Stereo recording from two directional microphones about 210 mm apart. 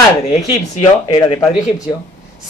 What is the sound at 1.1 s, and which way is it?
Speech, 20° left (ahead or behind).